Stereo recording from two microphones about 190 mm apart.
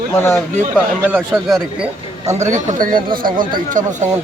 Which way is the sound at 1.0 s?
10° right (ahead or behind).